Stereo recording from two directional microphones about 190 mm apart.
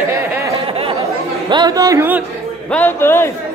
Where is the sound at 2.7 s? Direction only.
10° left (ahead or behind).